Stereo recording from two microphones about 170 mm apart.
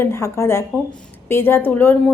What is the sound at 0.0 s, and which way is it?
A woman's voice, 15° left (ahead or behind).